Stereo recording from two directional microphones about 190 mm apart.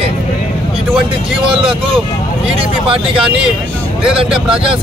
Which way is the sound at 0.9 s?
25° right (ahead or behind).